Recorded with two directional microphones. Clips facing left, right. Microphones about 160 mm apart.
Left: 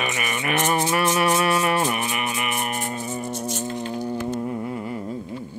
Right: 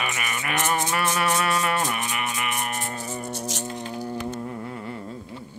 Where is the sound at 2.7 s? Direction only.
10° left (ahead or behind).